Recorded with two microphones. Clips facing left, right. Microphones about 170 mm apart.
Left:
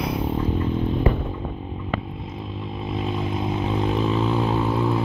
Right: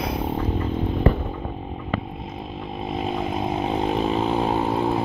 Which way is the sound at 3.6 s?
40° right (ahead or behind).